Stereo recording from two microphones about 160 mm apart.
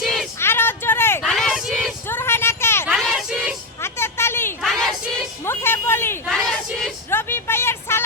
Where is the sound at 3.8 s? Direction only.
15° left (ahead or behind).